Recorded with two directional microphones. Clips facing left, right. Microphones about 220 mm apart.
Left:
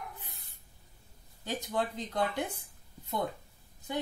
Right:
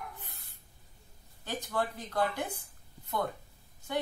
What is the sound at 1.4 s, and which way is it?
Speech, 15° left (ahead or behind).